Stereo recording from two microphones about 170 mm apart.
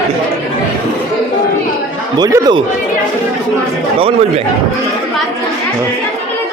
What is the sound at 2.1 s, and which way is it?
Speech, 25° right (ahead or behind).